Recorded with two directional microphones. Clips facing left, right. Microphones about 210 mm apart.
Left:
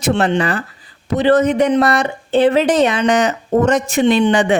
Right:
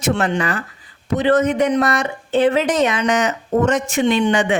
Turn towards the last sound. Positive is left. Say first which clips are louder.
# left 3 dB
turn(degrees=35)  # may be behind; listen again after turning